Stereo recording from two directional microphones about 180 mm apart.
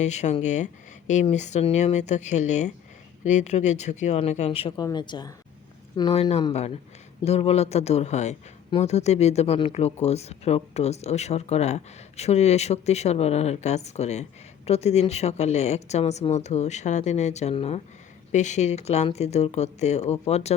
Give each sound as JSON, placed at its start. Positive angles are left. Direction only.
{"t": 0.0, "sound": "speech", "side_deg": 40}
{"t": 4.8, "sound": "speech", "side_deg": 25}